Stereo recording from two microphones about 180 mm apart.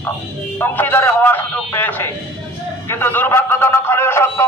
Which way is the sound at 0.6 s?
10° left (ahead or behind).